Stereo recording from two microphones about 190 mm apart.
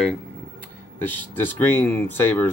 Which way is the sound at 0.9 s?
10° left (ahead or behind).